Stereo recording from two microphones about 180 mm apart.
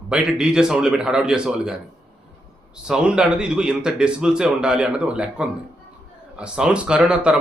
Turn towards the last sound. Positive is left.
turn(degrees=-5)  # may be behind; listen again after turning